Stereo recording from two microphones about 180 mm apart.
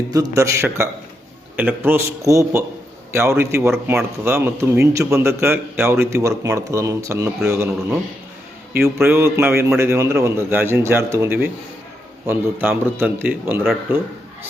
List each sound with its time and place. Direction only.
0.1 s a man's voice: 20° right (ahead or behind)